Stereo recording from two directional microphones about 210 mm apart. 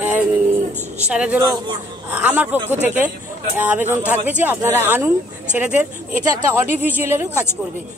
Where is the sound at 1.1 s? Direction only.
5° right (ahead or behind).